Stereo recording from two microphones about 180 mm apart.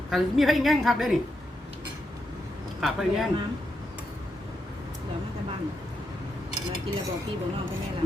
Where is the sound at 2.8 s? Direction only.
Centre (ahead or behind).